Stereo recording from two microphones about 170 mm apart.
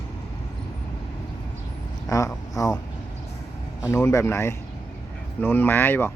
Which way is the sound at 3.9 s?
15° left (ahead or behind).